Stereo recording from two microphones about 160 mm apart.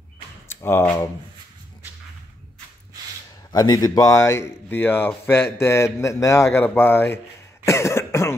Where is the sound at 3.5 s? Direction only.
25° left (ahead or behind).